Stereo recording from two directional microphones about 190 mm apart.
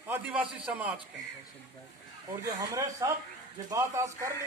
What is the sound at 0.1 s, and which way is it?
Speech, 10° right (ahead or behind).